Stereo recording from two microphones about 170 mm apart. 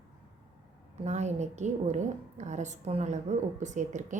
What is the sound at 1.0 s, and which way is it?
A woman's voice, 40° right (ahead or behind).